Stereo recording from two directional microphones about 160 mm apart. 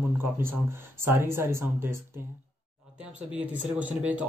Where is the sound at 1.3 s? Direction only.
15° right (ahead or behind).